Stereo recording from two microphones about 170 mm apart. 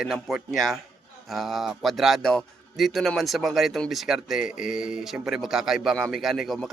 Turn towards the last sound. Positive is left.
turn(degrees=0)  # may be behind; listen again after turning